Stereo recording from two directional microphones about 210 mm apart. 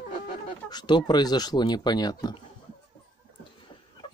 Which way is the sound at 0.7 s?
20° left (ahead or behind).